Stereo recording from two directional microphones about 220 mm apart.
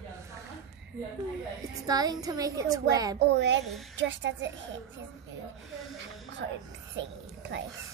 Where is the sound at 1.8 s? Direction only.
15° right (ahead or behind).